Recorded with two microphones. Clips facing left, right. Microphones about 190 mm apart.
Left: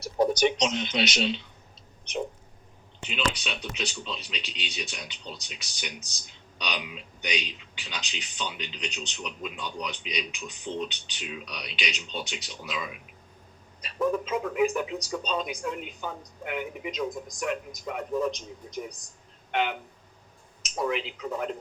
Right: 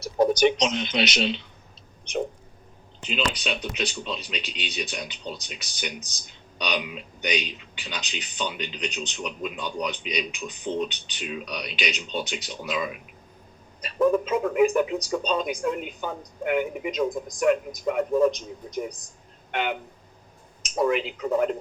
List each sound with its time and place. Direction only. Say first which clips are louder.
0.3 s speech: right 3 dB; 75° right (ahead or behind)
3.1 s speech: right 3 dB; 40° right (ahead or behind)
19.5 s a sound: even; 55° right (ahead or behind)
20.7 s speech: right 6 dB; 50° right (ahead or behind)